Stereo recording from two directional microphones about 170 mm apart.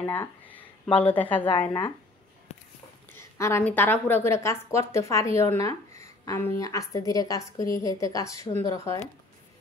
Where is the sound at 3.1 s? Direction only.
15° left (ahead or behind).